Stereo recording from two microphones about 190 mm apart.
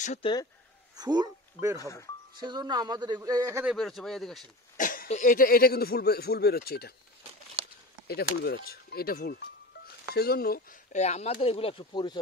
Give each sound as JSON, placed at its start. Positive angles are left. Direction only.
{"t": 0.0, "sound": "speech", "side_deg": 35}
{"t": 0.9, "sound": "speech", "side_deg": -20}
{"t": 1.8, "sound": "speech", "side_deg": 15}
{"t": 2.3, "sound": "a man's voice", "side_deg": -20}
{"t": 3.6, "sound": "speech", "side_deg": 0}
{"t": 4.7, "sound": "speech", "side_deg": 45}
{"t": 8.1, "sound": "speech", "side_deg": 55}